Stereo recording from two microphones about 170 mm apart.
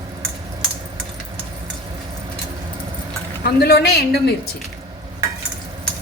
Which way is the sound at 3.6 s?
70° left (ahead or behind).